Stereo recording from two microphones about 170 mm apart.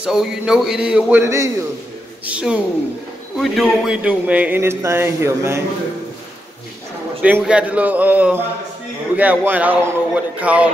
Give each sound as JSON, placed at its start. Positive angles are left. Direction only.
{"t": 0.0, "sound": "a man's voice", "side_deg": -5}
{"t": 1.2, "sound": "speech", "side_deg": -15}
{"t": 2.2, "sound": "speech", "side_deg": -5}
{"t": 7.2, "sound": "speech", "side_deg": -5}